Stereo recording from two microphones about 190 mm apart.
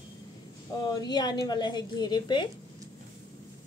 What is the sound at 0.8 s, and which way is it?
A woman's voice, 20° left (ahead or behind).